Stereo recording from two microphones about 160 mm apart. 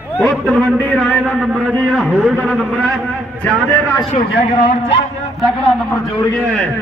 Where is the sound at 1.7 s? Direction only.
5° left (ahead or behind).